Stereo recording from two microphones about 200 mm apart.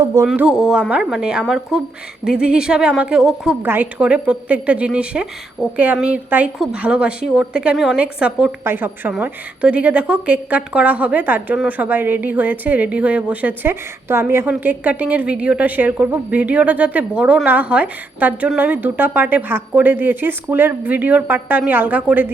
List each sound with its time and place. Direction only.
0.0 s speech: 15° right (ahead or behind)
0.3 s a woman's voice: 5° right (ahead or behind)